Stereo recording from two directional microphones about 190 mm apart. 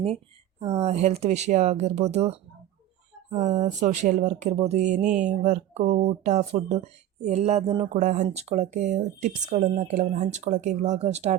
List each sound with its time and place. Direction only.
0.6 s speech: 35° right (ahead or behind)
3.5 s speech: 40° right (ahead or behind)